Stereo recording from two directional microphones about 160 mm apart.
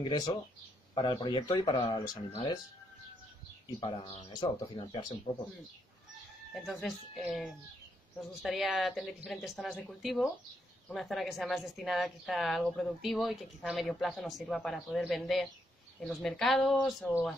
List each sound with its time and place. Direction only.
0.0 s speech: 25° left (ahead or behind)
3.6 s speech: 35° left (ahead or behind)
6.5 s a woman's voice: centre (ahead or behind)